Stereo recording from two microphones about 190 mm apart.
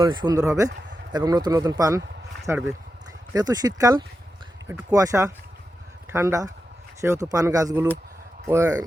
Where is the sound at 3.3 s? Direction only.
20° right (ahead or behind).